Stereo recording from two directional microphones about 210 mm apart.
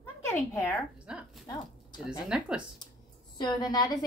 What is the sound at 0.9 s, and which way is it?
A woman's voice, 5° right (ahead or behind).